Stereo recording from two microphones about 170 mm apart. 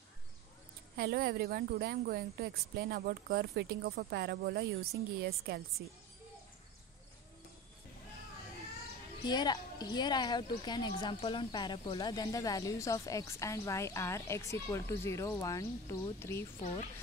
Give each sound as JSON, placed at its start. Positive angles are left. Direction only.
{"t": 0.9, "sound": "a woman's voice", "side_deg": -65}
{"t": 9.2, "sound": "a woman's voice", "side_deg": 25}